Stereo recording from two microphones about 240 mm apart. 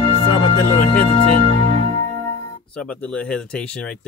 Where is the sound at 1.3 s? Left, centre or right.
Right.